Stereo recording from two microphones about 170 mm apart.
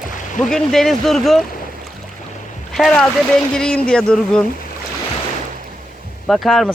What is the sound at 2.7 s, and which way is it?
Speech, 5° left (ahead or behind).